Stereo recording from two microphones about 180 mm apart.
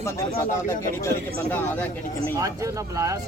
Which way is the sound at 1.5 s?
10° left (ahead or behind).